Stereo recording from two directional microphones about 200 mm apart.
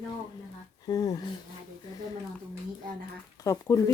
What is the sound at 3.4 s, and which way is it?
Speech, 15° left (ahead or behind).